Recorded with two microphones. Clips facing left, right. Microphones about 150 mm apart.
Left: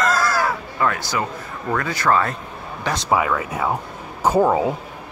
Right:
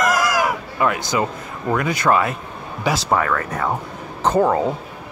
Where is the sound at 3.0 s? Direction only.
10° left (ahead or behind).